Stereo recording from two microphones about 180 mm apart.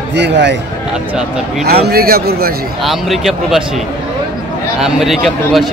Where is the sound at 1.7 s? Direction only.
60° right (ahead or behind).